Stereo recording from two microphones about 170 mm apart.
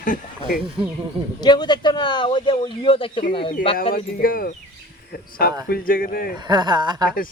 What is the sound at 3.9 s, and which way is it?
Speech, 60° left (ahead or behind).